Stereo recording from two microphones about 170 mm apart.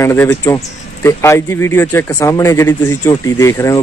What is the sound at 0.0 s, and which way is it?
Speech, 15° left (ahead or behind).